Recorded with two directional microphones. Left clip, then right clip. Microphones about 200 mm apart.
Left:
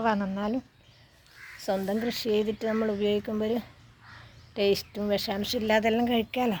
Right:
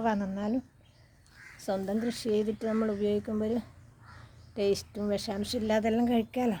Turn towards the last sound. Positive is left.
turn(degrees=5)  # may be behind; listen again after turning